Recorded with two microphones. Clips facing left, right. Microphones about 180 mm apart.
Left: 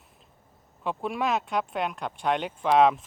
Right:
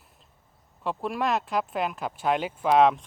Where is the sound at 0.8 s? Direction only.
Centre (ahead or behind).